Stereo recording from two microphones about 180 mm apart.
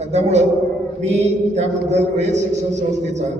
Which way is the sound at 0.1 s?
35° right (ahead or behind).